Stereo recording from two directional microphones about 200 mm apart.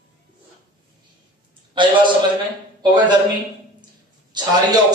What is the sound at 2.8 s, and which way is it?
Speech, 20° right (ahead or behind).